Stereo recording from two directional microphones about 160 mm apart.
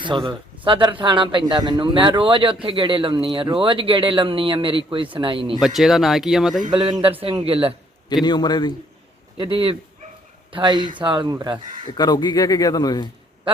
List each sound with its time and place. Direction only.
0.0 s a man's voice: 30° right (ahead or behind)
5.5 s speech: centre (ahead or behind)
6.7 s a man's voice: 30° right (ahead or behind)
8.2 s a man's voice: 25° left (ahead or behind)
9.4 s a man's voice: 35° right (ahead or behind)
11.9 s a man's voice: 25° left (ahead or behind)